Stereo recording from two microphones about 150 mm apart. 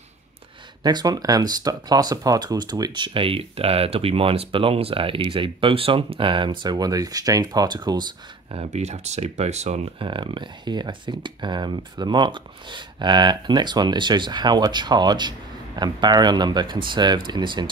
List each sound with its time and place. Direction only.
0.8 s speech: 25° right (ahead or behind)
8.6 s speech: 50° right (ahead or behind); by 17.6 s 30° right (ahead or behind)